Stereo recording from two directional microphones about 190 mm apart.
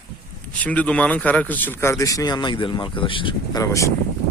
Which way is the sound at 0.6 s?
5° left (ahead or behind).